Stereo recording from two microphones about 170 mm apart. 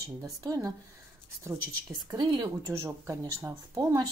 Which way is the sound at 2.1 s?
25° right (ahead or behind).